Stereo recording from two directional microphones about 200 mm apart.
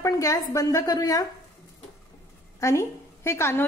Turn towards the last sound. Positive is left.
turn(degrees=15)  # may be behind; listen again after turning